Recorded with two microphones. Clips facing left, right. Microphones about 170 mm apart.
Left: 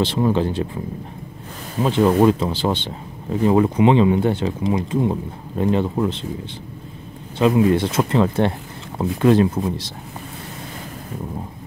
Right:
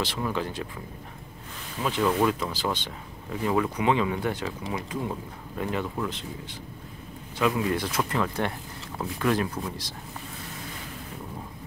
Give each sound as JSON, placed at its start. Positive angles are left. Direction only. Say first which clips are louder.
{"t": 0.0, "sound": "speech", "louder": "left 10 dB", "side_deg": 30}
{"t": 1.8, "sound": "speech", "louder": "left 9 dB", "side_deg": 35}
{"t": 7.3, "sound": "speech", "louder": "left 9 dB", "side_deg": 30}